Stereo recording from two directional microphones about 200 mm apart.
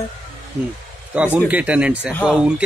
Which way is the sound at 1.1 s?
5° right (ahead or behind).